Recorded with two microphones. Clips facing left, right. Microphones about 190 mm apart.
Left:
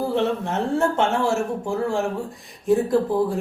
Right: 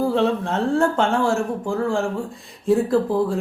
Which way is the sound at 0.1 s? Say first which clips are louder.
Right 2 dB; 20° left (ahead or behind).